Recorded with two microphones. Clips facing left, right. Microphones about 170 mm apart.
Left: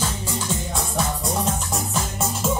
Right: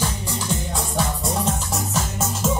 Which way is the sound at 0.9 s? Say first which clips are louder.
Right 1 dB; centre (ahead or behind).